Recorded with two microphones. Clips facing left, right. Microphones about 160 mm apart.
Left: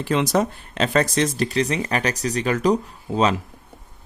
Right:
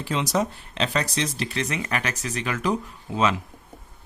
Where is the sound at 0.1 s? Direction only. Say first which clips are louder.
Left 4 dB; 55° left (ahead or behind).